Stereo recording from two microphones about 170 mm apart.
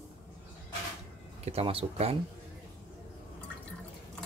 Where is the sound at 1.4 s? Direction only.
35° right (ahead or behind).